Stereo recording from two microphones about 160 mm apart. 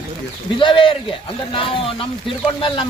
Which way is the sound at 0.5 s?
30° left (ahead or behind).